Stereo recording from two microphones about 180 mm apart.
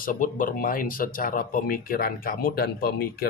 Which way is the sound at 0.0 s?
50° left (ahead or behind).